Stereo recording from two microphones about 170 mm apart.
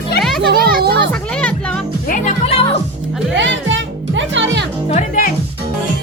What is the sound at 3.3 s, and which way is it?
Music, 90° right.